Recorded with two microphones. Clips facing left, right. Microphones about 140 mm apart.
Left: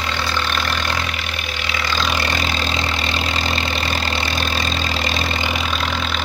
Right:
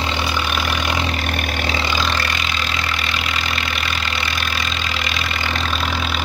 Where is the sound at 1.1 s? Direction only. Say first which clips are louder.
Right 5 dB; 50° right (ahead or behind).